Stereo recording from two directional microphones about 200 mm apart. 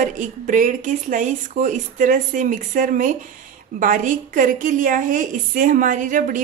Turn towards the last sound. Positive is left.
turn(degrees=-40)  # may be behind; listen again after turning